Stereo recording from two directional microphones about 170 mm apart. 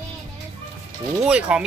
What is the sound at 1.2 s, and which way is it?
Speech, 5° right (ahead or behind).